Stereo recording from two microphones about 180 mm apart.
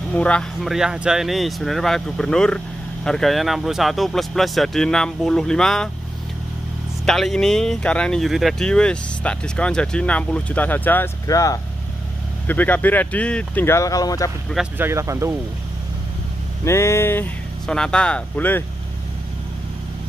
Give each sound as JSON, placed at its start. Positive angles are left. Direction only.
{"t": 0.1, "sound": "speech", "side_deg": 5}
{"t": 7.1, "sound": "speech", "side_deg": 0}
{"t": 14.5, "sound": "speech", "side_deg": -10}
{"t": 16.6, "sound": "speech", "side_deg": 15}